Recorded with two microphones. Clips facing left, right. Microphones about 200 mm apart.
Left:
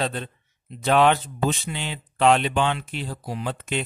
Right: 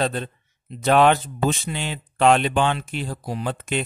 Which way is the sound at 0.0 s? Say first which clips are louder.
Right 3 dB; 45° right (ahead or behind).